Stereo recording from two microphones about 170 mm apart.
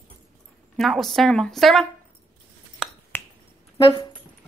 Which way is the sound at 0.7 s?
Centre (ahead or behind).